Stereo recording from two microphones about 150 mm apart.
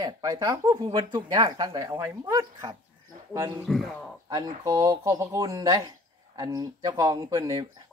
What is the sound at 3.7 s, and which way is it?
Speech, centre (ahead or behind).